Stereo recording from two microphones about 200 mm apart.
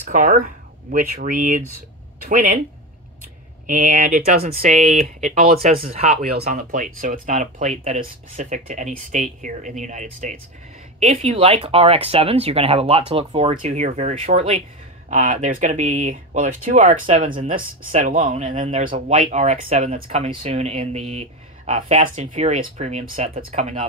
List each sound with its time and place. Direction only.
0.1 s speech: 45° right (ahead or behind)
3.6 s speech: 40° right (ahead or behind)